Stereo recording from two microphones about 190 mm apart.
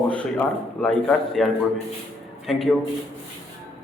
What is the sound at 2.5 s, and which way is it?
Speech, centre (ahead or behind).